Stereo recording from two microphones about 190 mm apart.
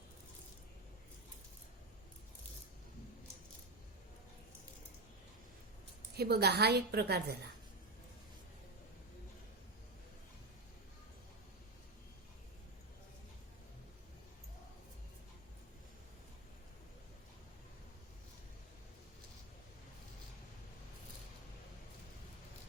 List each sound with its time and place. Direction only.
6.1 s a woman's voice: 55° right (ahead or behind)